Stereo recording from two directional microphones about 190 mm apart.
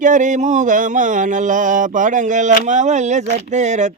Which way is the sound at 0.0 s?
40° right (ahead or behind).